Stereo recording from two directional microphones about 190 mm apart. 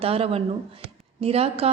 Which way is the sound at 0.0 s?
30° right (ahead or behind).